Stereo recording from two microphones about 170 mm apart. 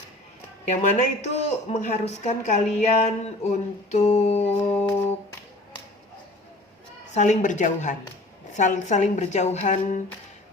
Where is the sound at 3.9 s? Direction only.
40° left (ahead or behind).